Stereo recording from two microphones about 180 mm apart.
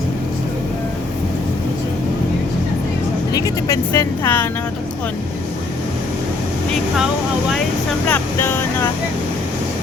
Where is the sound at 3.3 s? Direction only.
20° left (ahead or behind).